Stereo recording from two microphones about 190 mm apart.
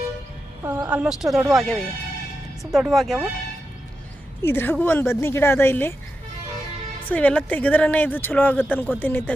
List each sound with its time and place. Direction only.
0.6 s speech: 10° right (ahead or behind)
4.4 s speech: 10° left (ahead or behind)
7.1 s speech: 10° left (ahead or behind)